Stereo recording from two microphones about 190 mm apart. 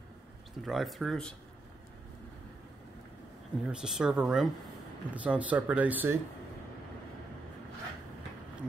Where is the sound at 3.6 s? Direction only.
5° right (ahead or behind).